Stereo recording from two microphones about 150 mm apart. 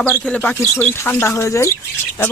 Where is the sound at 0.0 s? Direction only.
10° left (ahead or behind).